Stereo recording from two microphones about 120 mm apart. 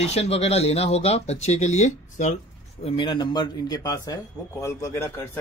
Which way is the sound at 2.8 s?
45° left (ahead or behind).